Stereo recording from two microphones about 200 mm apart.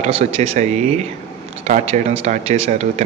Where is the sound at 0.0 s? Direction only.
35° right (ahead or behind).